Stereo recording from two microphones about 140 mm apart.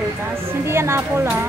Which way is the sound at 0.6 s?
20° right (ahead or behind).